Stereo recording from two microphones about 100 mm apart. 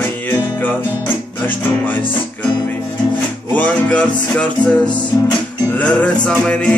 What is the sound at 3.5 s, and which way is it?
Music, 15° left (ahead or behind).